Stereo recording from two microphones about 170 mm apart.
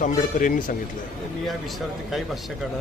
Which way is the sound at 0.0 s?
50° left (ahead or behind).